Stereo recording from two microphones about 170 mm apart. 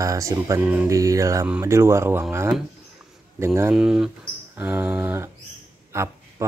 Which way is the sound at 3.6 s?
15° right (ahead or behind).